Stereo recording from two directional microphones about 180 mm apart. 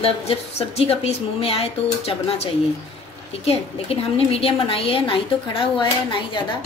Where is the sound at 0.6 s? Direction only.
35° left (ahead or behind).